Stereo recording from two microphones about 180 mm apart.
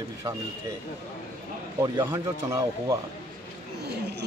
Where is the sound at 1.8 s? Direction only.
15° right (ahead or behind).